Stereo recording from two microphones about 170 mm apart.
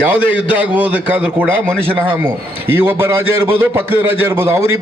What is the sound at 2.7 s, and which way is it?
A man's voice, 15° right (ahead or behind).